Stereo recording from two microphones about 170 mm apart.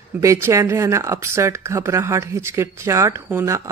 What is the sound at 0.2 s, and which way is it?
Speech, 15° right (ahead or behind).